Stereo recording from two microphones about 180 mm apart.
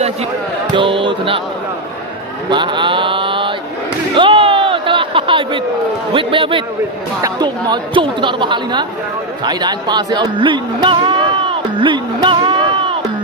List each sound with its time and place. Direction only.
0.7 s a woman's voice: 30° right (ahead or behind)
2.5 s mantra: 25° right (ahead or behind)
4.2 s a sound: 30° right (ahead or behind)
6.1 s a woman's voice: 30° right (ahead or behind)